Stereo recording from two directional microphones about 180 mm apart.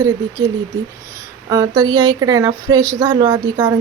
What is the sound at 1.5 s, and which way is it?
A woman's voice, 20° right (ahead or behind).